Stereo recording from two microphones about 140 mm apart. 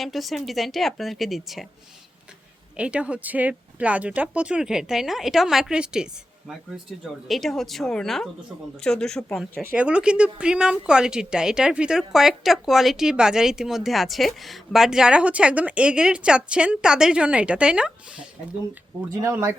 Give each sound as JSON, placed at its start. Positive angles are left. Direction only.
{"t": 0.0, "sound": "speech", "side_deg": 0}
{"t": 2.7, "sound": "speech", "side_deg": -10}
{"t": 9.7, "sound": "speech", "side_deg": -10}
{"t": 19.1, "sound": "speech", "side_deg": -25}